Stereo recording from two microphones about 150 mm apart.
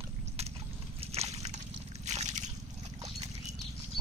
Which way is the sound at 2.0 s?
50° right (ahead or behind).